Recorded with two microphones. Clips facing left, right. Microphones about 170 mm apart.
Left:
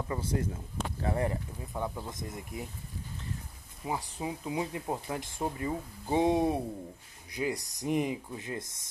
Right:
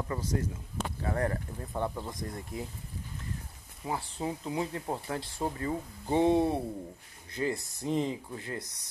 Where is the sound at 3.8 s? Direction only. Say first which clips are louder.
Right 1 dB; 10° left (ahead or behind).